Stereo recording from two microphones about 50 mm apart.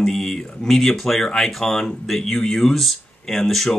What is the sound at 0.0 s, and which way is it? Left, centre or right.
Speech, centre.